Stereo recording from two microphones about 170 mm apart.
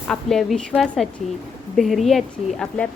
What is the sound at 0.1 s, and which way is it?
A woman's voice, centre (ahead or behind).